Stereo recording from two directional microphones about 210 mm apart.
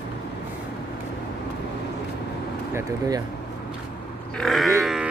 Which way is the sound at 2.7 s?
10° right (ahead or behind).